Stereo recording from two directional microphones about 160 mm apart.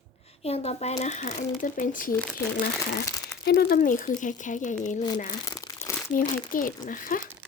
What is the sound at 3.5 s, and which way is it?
Speech, 70° left (ahead or behind).